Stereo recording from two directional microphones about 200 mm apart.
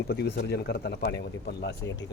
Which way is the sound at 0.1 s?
55° left (ahead or behind).